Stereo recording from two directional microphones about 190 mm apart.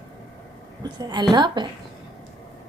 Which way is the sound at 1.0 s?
20° right (ahead or behind).